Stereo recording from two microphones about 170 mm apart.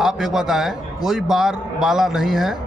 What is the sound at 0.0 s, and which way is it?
A man's voice, centre (ahead or behind).